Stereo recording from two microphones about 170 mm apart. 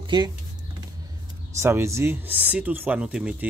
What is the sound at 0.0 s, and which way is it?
Speech, 25° right (ahead or behind).